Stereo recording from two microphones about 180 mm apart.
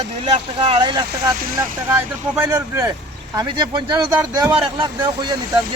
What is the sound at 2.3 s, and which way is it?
Speech, 10° right (ahead or behind).